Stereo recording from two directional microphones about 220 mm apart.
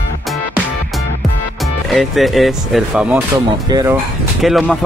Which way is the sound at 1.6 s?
Centre (ahead or behind).